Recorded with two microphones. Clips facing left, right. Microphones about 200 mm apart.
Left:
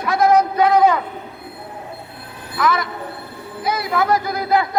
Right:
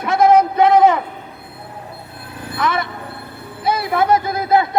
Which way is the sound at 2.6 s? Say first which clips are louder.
Left 1 dB; 25° right (ahead or behind).